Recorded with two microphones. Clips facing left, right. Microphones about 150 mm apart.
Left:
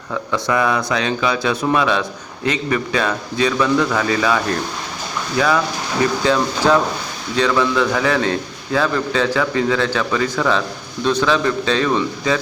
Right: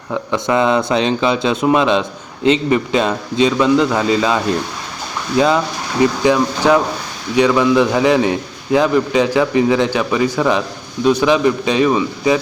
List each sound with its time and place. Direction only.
0.1 s a man's voice: 20° right (ahead or behind)